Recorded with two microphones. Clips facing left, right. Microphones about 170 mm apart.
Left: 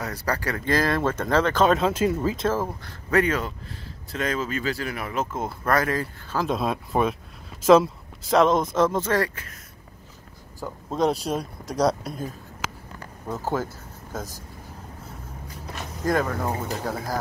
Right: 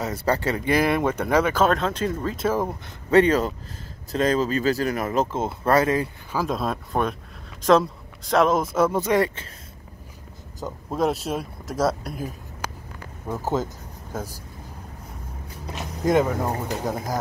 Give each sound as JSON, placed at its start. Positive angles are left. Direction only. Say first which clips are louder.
{"t": 0.0, "sound": "speech", "louder": "right 4 dB", "side_deg": -25}
{"t": 1.7, "sound": "speech", "louder": "left 2 dB", "side_deg": 5}
{"t": 2.4, "sound": "speech", "louder": "right 1 dB", "side_deg": -15}
{"t": 6.3, "sound": "speech", "louder": "left 1 dB", "side_deg": 0}
{"t": 10.6, "sound": "speech", "louder": "even", "side_deg": -5}
{"t": 13.3, "sound": "speech", "louder": "right 2 dB", "side_deg": -10}
{"t": 15.7, "sound": "speech", "louder": "right 4 dB", "side_deg": -20}